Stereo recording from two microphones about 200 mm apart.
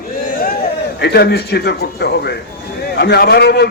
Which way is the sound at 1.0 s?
55° left (ahead or behind).